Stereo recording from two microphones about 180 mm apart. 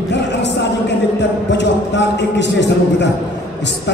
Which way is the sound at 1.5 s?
75° left (ahead or behind).